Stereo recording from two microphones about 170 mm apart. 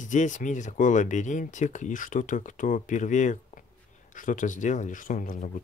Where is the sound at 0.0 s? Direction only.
45° left (ahead or behind).